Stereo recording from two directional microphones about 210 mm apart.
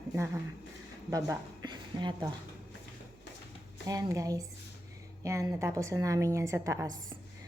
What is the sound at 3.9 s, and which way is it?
A woman's voice, 15° right (ahead or behind).